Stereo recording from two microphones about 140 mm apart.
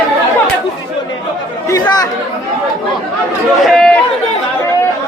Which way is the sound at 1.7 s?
30° left (ahead or behind).